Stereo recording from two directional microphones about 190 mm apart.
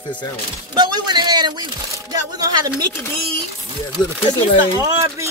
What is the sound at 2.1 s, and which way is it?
Speech, 20° right (ahead or behind).